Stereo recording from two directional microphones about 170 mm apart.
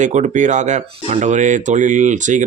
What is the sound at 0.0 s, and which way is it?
Speech, 45° right (ahead or behind).